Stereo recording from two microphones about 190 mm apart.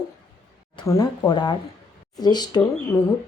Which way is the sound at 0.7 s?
20° left (ahead or behind).